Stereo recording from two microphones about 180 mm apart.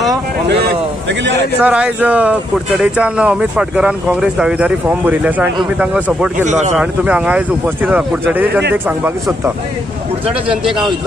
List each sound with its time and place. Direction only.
1.6 s speech: 10° right (ahead or behind)
6.4 s speech: 40° right (ahead or behind)
6.8 s speech: 5° right (ahead or behind)